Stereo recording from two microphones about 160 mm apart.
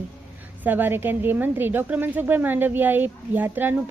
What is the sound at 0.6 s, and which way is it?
A woman's voice, 10° right (ahead or behind).